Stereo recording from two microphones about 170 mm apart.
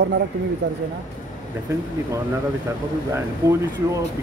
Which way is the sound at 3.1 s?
15° right (ahead or behind).